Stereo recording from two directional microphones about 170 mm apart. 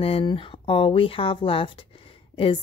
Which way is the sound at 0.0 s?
30° left (ahead or behind).